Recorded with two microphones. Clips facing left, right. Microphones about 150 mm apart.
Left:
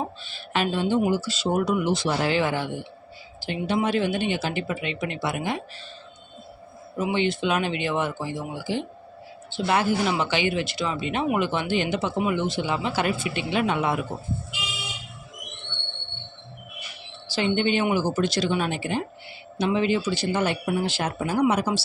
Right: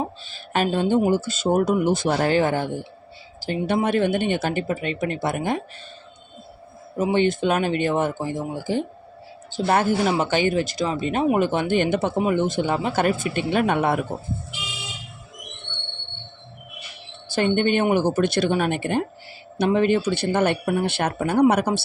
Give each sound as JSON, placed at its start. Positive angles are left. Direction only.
{"t": 0.3, "sound": "a woman's voice", "side_deg": -45}
{"t": 3.8, "sound": "speech", "side_deg": -55}
{"t": 6.9, "sound": "speech", "side_deg": -45}
{"t": 12.1, "sound": "speech", "side_deg": -40}
{"t": 17.3, "sound": "speech", "side_deg": -50}